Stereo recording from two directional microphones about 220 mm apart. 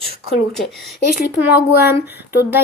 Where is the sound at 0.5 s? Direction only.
Centre (ahead or behind).